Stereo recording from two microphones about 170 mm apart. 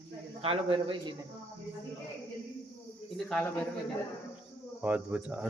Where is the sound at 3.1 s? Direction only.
Centre (ahead or behind).